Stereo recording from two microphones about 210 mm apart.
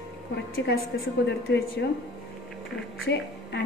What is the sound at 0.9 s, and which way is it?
Speech, 55° left (ahead or behind).